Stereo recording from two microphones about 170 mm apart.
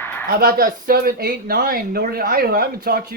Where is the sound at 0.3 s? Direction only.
60° right (ahead or behind).